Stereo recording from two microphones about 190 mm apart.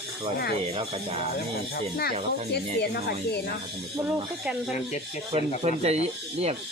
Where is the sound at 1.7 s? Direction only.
55° left (ahead or behind).